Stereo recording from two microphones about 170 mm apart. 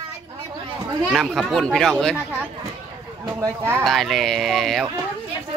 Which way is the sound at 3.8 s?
Centre (ahead or behind).